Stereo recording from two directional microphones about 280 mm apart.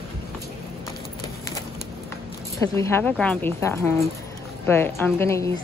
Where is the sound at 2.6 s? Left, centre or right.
Centre.